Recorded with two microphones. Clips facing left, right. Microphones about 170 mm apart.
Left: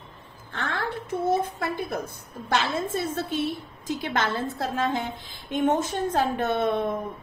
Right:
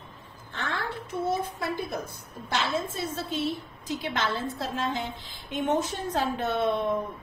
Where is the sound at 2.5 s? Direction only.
55° left (ahead or behind).